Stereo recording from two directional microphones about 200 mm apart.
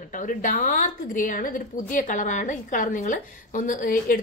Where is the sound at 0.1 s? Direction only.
40° left (ahead or behind).